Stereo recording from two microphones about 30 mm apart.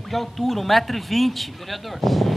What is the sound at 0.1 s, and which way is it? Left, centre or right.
Speech, centre.